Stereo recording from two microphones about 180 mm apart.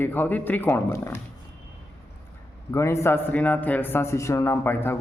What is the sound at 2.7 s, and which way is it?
Speech, 15° left (ahead or behind).